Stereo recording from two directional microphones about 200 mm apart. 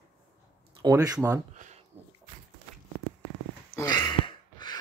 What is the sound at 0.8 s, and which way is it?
Speech, 15° right (ahead or behind).